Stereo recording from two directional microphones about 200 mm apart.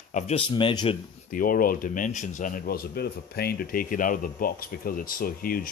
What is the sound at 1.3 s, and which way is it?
Speech, 45° left (ahead or behind).